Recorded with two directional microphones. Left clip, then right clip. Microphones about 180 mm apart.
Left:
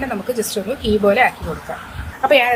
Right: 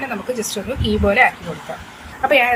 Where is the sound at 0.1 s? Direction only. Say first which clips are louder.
Left 2 dB; 10° left (ahead or behind).